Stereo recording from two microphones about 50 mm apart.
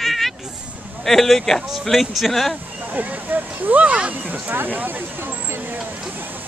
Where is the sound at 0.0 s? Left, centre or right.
Centre.